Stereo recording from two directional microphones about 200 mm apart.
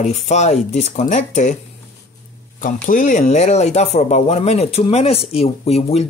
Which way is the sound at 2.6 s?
40° left (ahead or behind).